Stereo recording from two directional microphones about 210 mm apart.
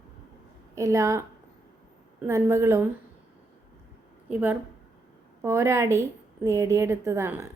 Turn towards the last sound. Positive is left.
turn(degrees=-10)  # may be behind; listen again after turning